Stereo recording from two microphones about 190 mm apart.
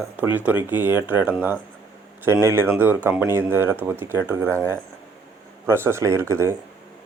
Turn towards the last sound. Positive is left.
turn(degrees=-15)  # may be behind; listen again after turning